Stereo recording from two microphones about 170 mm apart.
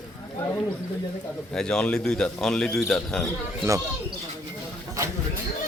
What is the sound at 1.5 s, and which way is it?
Speech, 5° left (ahead or behind).